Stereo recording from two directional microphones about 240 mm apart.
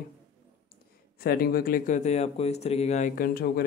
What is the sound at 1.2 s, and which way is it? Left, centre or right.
A man's voice, left.